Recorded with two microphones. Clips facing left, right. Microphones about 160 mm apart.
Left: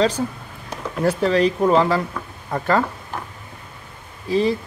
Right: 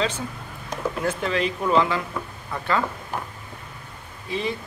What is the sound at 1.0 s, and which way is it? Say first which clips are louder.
Speech: left 9 dB; 35° left (ahead or behind).